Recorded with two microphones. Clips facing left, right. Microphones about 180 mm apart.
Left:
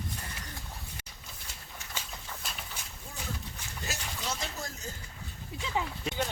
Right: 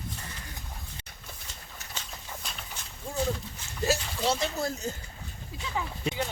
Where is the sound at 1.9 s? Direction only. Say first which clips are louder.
Right 1 dB; 5° left (ahead or behind).